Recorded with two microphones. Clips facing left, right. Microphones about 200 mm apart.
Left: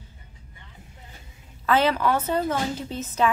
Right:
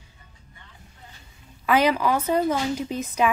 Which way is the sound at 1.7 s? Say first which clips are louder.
Right 1 dB; 10° right (ahead or behind).